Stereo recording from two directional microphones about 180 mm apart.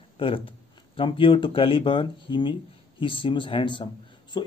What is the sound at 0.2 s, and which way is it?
Speech, 30° left (ahead or behind).